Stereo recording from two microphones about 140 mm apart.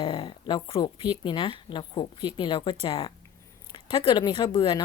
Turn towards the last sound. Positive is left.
turn(degrees=35)  # may be behind; listen again after turning